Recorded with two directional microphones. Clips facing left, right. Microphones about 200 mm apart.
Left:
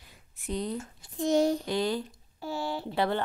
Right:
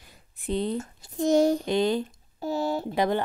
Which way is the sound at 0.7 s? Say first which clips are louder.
Right 5 dB; 40° right (ahead or behind).